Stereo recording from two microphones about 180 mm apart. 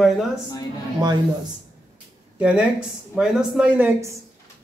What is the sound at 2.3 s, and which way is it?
Speech, 5° right (ahead or behind).